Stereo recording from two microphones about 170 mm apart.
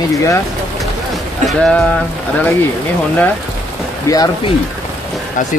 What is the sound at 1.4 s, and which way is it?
Speech, 5° left (ahead or behind).